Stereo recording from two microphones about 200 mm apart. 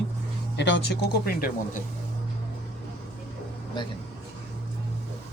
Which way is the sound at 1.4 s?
45° left (ahead or behind).